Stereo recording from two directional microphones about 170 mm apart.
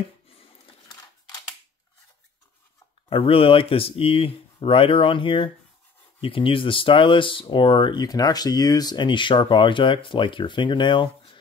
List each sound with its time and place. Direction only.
3.1 s speech: 35° left (ahead or behind)